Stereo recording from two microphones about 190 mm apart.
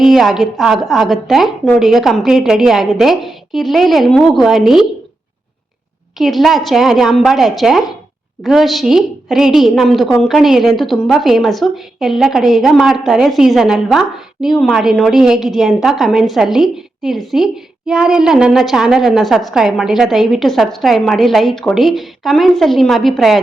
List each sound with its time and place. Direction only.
0.0 s a woman's voice: centre (ahead or behind)
6.1 s a woman's voice: centre (ahead or behind)